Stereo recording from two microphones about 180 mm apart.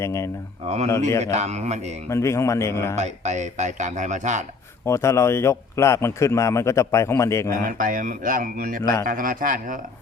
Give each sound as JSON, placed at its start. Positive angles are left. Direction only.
{"t": 0.0, "sound": "a man's voice", "side_deg": 15}
{"t": 1.2, "sound": "speech", "side_deg": -40}
{"t": 2.0, "sound": "a man's voice", "side_deg": 15}
{"t": 2.9, "sound": "speech", "side_deg": -40}
{"t": 4.9, "sound": "a man's voice", "side_deg": 15}
{"t": 7.5, "sound": "speech", "side_deg": -50}